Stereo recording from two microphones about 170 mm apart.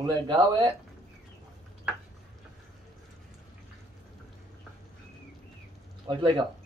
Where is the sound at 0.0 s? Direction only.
25° right (ahead or behind).